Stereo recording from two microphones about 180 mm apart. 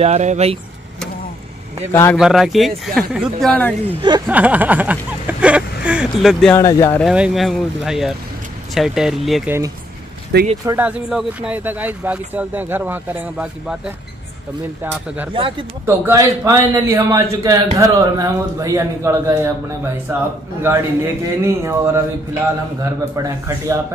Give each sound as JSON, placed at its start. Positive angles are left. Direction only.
{"t": 0.0, "sound": "speech", "side_deg": -40}
{"t": 1.9, "sound": "speech", "side_deg": 15}
{"t": 2.1, "sound": "speech", "side_deg": -5}
{"t": 4.3, "sound": "a man's voice", "side_deg": -10}
{"t": 6.5, "sound": "speech", "side_deg": 15}
{"t": 7.0, "sound": "speech", "side_deg": -5}
{"t": 10.6, "sound": "speech", "side_deg": -20}
{"t": 10.9, "sound": "a man's voice", "side_deg": -5}
{"t": 14.8, "sound": "a man's voice", "side_deg": -10}
{"t": 15.3, "sound": "speech", "side_deg": -30}
{"t": 16.1, "sound": "a man's voice", "side_deg": -15}
{"t": 20.6, "sound": "a man's voice", "side_deg": -15}